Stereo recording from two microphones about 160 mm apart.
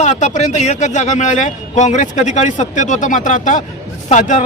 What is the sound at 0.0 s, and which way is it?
A man's voice, 50° left (ahead or behind).